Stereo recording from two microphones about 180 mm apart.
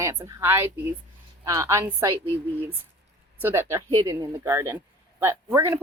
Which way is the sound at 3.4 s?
15° right (ahead or behind).